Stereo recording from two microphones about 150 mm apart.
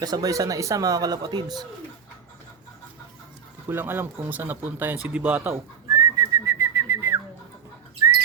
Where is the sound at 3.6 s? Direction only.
15° right (ahead or behind).